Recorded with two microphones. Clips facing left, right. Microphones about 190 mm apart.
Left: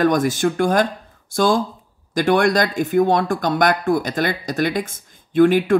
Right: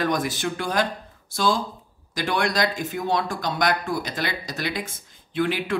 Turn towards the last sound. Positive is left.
turn(degrees=50)  # may be behind; listen again after turning